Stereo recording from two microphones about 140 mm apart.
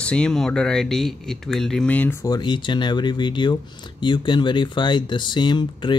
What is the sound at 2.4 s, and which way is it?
Speech, 35° left (ahead or behind).